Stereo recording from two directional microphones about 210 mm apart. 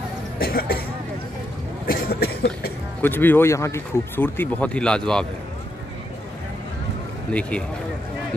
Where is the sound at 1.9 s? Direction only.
50° left (ahead or behind).